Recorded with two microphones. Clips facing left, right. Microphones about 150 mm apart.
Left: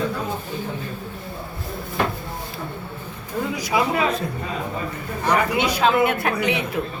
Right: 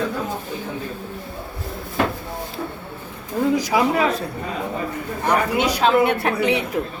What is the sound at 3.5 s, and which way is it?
Speech, 40° right (ahead or behind).